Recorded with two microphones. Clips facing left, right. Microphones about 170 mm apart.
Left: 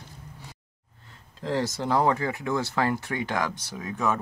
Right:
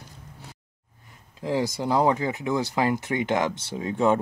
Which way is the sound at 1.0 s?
15° right (ahead or behind).